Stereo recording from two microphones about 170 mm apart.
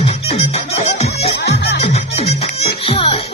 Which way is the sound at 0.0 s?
35° left (ahead or behind).